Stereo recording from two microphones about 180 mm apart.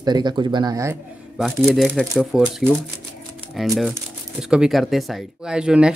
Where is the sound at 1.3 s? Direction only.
Centre (ahead or behind).